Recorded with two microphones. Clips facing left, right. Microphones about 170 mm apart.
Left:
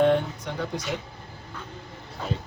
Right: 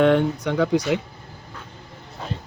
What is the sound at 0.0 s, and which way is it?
Speech, 80° right.